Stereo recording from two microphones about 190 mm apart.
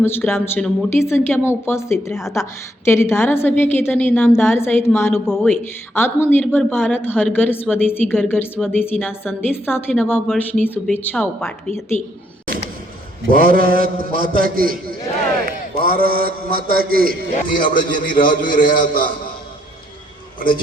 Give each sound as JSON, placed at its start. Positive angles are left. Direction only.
{"t": 0.0, "sound": "a woman's voice", "side_deg": 10}
{"t": 5.1, "sound": "a woman's voice", "side_deg": 0}
{"t": 5.5, "sound": "speech", "side_deg": 10}
{"t": 11.9, "sound": "speech", "side_deg": 40}
{"t": 13.3, "sound": "a man's voice", "side_deg": -50}
{"t": 17.5, "sound": "a man's voice", "side_deg": 45}